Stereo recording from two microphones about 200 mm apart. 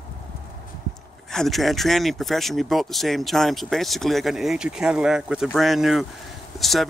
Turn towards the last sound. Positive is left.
turn(degrees=0)  # may be behind; listen again after turning